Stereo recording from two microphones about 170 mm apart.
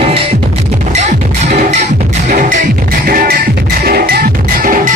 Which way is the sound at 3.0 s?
60° right (ahead or behind).